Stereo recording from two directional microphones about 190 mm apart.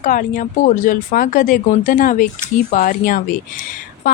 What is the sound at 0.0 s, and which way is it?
A woman's voice, 45° left (ahead or behind).